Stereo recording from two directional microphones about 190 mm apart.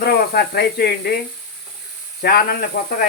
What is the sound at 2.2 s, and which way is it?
Speech, 55° left (ahead or behind).